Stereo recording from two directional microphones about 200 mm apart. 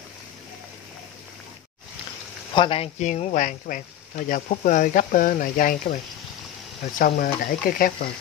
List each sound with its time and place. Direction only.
2.5 s speech: 25° left (ahead or behind); by 5.9 s 45° left (ahead or behind)
7.0 s speech: 45° left (ahead or behind)